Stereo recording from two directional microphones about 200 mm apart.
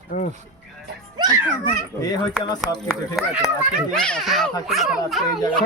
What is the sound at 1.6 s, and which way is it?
Speech, 20° left (ahead or behind).